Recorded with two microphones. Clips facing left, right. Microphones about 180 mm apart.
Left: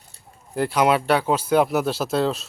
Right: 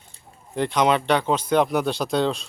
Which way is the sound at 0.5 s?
5° left (ahead or behind).